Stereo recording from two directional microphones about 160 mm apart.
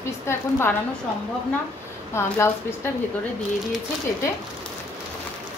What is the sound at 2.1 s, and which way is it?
Speech, 15° left (ahead or behind).